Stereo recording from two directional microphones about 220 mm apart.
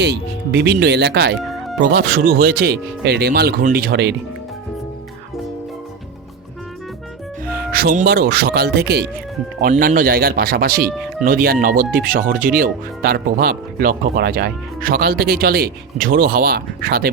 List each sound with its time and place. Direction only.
0.0 s speech: 50° right (ahead or behind)
1.5 s music: centre (ahead or behind)
1.8 s speech: 45° right (ahead or behind)
7.5 s speech: 40° right (ahead or behind)